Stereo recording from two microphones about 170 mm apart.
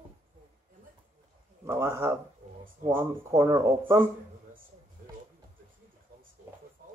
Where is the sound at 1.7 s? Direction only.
15° right (ahead or behind).